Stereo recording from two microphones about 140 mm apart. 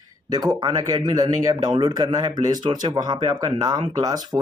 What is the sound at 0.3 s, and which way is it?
A man's voice, 30° right (ahead or behind).